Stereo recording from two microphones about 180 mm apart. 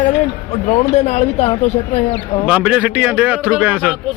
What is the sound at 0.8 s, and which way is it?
Speech, 40° left (ahead or behind).